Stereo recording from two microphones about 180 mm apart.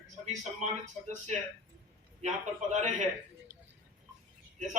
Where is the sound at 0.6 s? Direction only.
40° right (ahead or behind).